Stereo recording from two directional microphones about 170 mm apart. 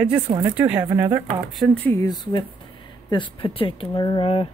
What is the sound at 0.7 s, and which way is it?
Speech, 20° right (ahead or behind).